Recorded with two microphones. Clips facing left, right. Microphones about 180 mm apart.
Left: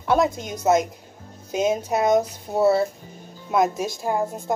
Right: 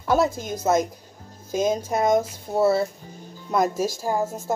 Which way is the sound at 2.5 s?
15° left (ahead or behind).